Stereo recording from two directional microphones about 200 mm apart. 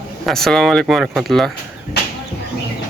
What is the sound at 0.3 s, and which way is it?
Speech, centre (ahead or behind).